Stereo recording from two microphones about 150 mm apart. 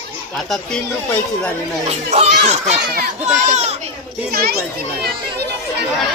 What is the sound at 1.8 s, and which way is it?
Speech, 45° right (ahead or behind).